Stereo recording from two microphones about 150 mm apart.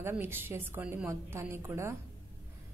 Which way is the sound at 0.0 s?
15° right (ahead or behind).